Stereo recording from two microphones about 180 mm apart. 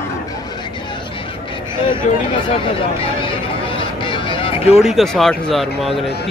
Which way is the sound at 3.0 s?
30° left (ahead or behind).